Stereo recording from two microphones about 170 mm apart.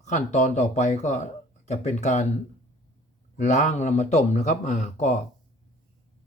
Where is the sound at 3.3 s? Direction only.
45° left (ahead or behind).